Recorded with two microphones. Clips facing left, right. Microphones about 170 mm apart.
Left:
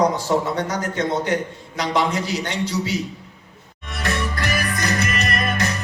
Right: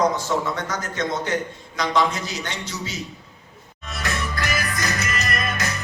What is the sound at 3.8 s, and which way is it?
Music, 55° left (ahead or behind).